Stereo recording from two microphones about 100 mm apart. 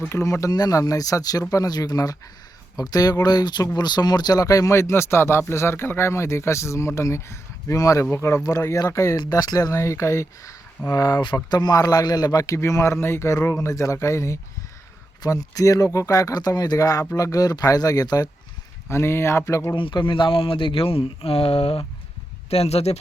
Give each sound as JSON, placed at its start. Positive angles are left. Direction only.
{"t": 0.1, "sound": "speech", "side_deg": 30}
{"t": 9.1, "sound": "speech", "side_deg": 40}
{"t": 18.9, "sound": "speech", "side_deg": 25}
{"t": 19.7, "sound": "speech", "side_deg": 55}
{"t": 22.4, "sound": "speech", "side_deg": 90}